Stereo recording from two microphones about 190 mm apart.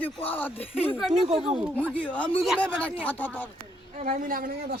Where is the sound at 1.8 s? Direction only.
5° left (ahead or behind).